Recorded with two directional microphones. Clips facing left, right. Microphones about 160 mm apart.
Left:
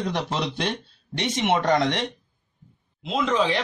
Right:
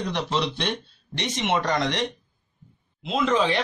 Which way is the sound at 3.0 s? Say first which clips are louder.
Right 1 dB; centre (ahead or behind).